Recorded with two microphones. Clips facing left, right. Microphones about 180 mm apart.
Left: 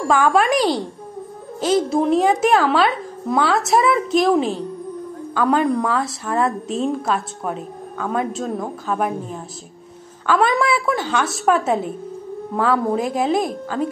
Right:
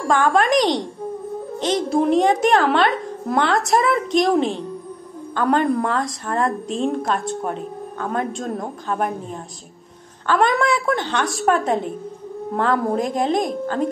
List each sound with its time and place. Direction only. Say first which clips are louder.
0.1 s a child's voice: even; 10° left (ahead or behind)